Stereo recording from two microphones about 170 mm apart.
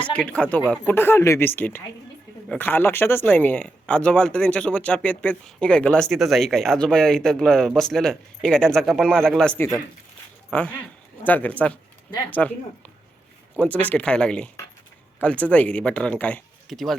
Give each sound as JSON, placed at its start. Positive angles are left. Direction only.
{"t": 0.0, "sound": "speech", "side_deg": 5}
{"t": 9.6, "sound": "speech", "side_deg": 15}
{"t": 13.6, "sound": "speech", "side_deg": 10}